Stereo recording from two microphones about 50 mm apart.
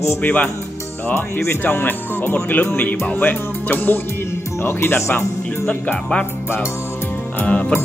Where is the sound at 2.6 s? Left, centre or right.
Left.